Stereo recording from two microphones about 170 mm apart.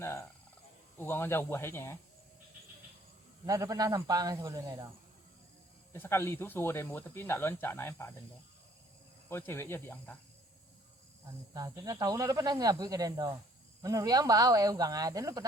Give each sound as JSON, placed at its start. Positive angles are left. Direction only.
{"t": 0.0, "sound": "a sound", "side_deg": 15}
{"t": 0.9, "sound": "speech", "side_deg": 15}
{"t": 3.4, "sound": "speech", "side_deg": -20}
{"t": 5.9, "sound": "speech", "side_deg": 15}
{"t": 9.3, "sound": "speech", "side_deg": 15}
{"t": 11.5, "sound": "speech", "side_deg": -20}